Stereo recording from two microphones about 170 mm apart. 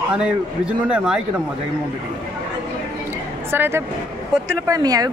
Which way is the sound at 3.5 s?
10° right (ahead or behind).